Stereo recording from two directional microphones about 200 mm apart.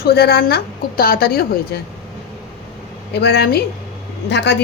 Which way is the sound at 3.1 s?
55° left (ahead or behind).